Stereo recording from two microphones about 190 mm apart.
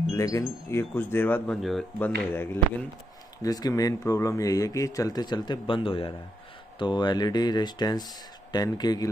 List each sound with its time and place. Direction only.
0.1 s speech: 15° left (ahead or behind)